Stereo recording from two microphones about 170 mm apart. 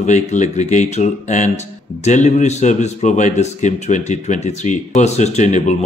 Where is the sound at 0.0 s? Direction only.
45° left (ahead or behind).